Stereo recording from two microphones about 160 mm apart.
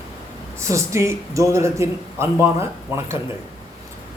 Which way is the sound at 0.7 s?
20° right (ahead or behind).